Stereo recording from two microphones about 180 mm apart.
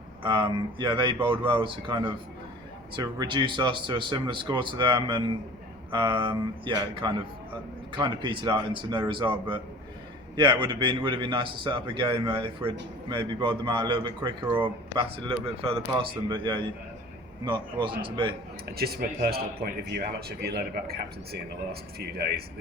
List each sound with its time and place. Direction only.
0.2 s a man's voice: 25° right (ahead or behind)
18.8 s a man's voice: 55° right (ahead or behind)